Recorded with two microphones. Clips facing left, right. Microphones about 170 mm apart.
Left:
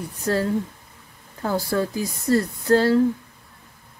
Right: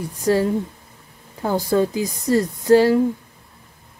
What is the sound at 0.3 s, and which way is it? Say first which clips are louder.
Speech: right 4 dB; 15° right (ahead or behind).